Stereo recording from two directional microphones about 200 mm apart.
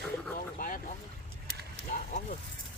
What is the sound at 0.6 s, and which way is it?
Speech, 40° left (ahead or behind).